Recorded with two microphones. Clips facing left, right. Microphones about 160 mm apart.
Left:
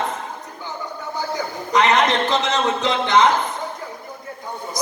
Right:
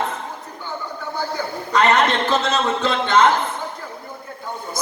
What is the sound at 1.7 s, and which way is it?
A man's voice, 15° left (ahead or behind).